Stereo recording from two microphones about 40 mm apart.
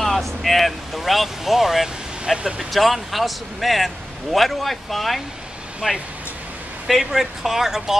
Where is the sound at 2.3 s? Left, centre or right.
Centre.